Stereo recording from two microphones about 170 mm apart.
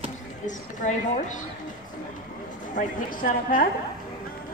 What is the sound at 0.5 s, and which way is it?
Speech, 45° left (ahead or behind).